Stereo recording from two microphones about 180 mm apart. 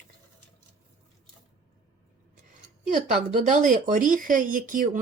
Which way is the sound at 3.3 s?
45° right (ahead or behind).